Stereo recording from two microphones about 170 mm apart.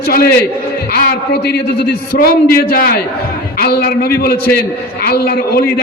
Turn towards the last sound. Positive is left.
turn(degrees=65)  # may be behind; listen again after turning